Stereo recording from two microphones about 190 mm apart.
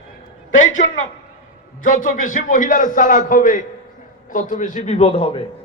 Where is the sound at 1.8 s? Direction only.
45° left (ahead or behind).